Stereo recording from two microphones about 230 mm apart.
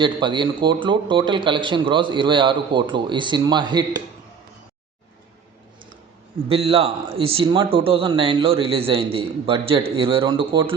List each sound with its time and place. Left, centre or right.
0.0 s a man's voice: right
6.5 s a man's voice: right